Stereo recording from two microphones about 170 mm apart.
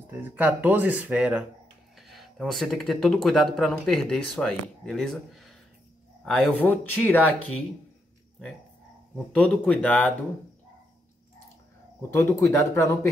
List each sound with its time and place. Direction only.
0.4 s speech: 10° right (ahead or behind); by 7.6 s 10° left (ahead or behind)
9.3 s speech: 5° left (ahead or behind)
12.0 s speech: 15° left (ahead or behind)